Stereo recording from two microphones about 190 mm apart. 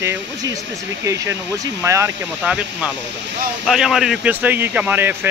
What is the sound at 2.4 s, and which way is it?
Speech, 5° right (ahead or behind).